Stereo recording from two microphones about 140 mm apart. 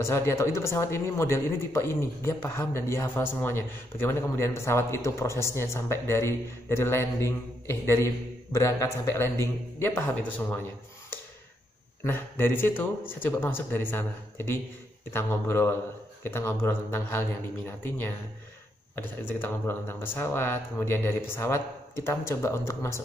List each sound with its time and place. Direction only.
0.0 s a man's voice: 20° left (ahead or behind)
12.0 s speech: 15° left (ahead or behind)